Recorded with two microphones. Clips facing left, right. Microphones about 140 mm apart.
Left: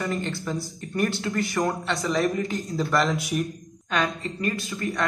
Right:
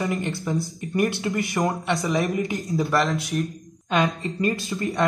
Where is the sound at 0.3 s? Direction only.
20° right (ahead or behind).